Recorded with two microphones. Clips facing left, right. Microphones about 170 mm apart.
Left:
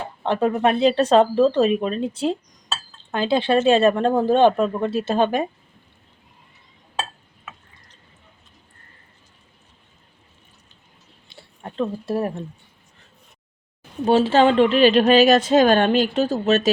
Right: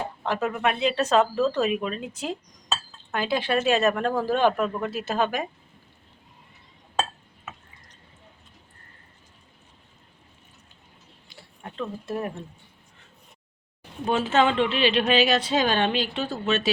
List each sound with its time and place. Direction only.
0.2 s speech: 30° left (ahead or behind)
11.3 s a sound: 30° left (ahead or behind)
14.0 s speech: 30° left (ahead or behind)